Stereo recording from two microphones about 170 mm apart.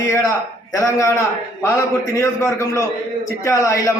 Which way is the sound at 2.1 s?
20° left (ahead or behind).